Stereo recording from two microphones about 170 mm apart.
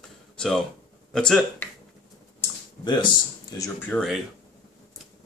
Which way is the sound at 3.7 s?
5° left (ahead or behind).